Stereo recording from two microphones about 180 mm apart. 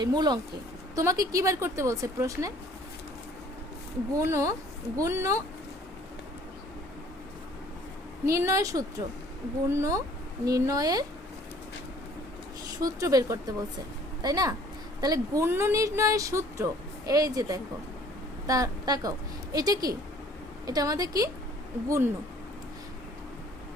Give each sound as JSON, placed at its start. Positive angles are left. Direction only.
{"t": 0.0, "sound": "speech", "side_deg": -25}
{"t": 4.2, "sound": "speech", "side_deg": -15}
{"t": 8.2, "sound": "speech", "side_deg": -15}
{"t": 12.8, "sound": "speech", "side_deg": -20}